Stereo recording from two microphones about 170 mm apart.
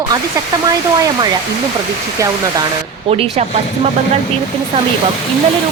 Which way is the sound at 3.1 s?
40° right (ahead or behind).